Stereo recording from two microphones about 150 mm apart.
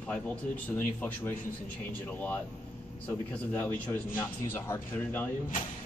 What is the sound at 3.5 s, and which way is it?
Speech, 10° left (ahead or behind).